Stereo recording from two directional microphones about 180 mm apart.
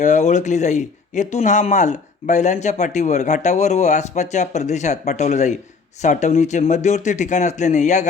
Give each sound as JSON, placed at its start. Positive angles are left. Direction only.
{"t": 0.0, "sound": "speech", "side_deg": 40}